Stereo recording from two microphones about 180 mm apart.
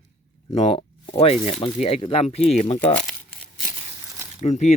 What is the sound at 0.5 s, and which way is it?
Speech, 30° left (ahead or behind).